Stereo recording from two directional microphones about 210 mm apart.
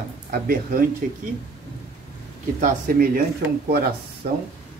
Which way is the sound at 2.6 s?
45° right (ahead or behind).